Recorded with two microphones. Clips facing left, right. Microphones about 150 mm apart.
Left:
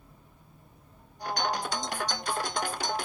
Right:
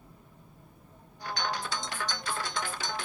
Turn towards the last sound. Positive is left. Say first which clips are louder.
# left 4 dB
turn(degrees=45)  # may be behind; listen again after turning